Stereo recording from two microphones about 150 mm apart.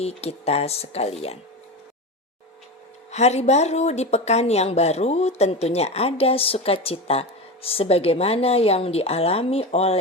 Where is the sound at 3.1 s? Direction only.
50° left (ahead or behind).